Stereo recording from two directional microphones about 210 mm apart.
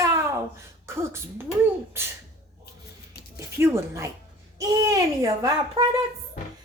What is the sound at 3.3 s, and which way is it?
A woman's voice, 15° right (ahead or behind).